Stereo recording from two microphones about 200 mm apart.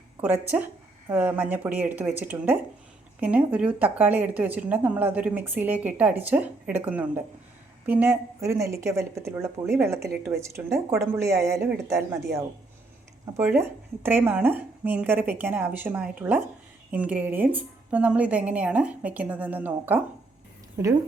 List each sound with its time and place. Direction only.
0.2 s a woman's voice: 10° right (ahead or behind)